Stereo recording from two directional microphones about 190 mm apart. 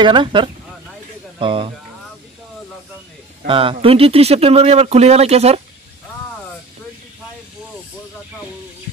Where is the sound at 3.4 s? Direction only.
30° right (ahead or behind).